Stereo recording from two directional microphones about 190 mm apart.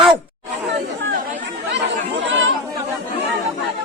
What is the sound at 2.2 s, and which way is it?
Chatter, 70° right (ahead or behind).